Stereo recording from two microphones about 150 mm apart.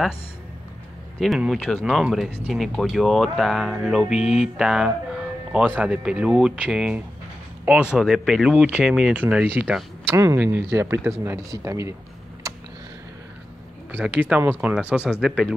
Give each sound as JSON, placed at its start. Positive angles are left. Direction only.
{"t": 1.2, "sound": "speech", "side_deg": 0}
{"t": 12.4, "sound": "a sound", "side_deg": -20}
{"t": 13.9, "sound": "speech", "side_deg": -10}